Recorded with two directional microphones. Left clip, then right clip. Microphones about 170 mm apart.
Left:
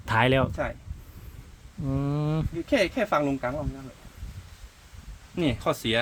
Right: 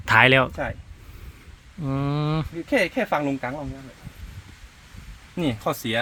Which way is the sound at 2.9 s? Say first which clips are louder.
Right 1 dB; 65° right (ahead or behind).